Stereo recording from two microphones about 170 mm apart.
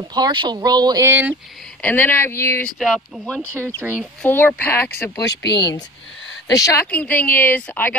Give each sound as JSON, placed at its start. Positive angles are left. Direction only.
{"t": 0.1, "sound": "speech", "side_deg": -25}
{"t": 1.8, "sound": "speech", "side_deg": 10}
{"t": 2.8, "sound": "speech", "side_deg": 0}
{"t": 3.5, "sound": "speech", "side_deg": -15}
{"t": 4.2, "sound": "speech", "side_deg": 10}
{"t": 5.2, "sound": "speech", "side_deg": 85}
{"t": 6.4, "sound": "speech", "side_deg": 20}